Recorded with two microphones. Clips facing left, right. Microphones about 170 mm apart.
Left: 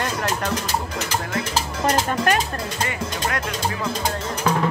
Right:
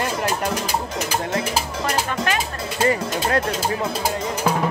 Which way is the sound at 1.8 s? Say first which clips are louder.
Left 5 dB; 45° left (ahead or behind).